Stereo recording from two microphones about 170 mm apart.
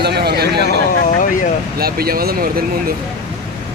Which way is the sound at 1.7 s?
65° right (ahead or behind).